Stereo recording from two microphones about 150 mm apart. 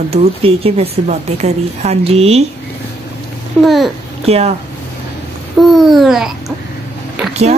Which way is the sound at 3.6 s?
Centre (ahead or behind).